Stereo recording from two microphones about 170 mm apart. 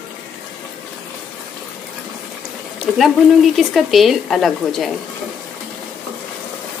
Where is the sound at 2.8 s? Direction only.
Centre (ahead or behind).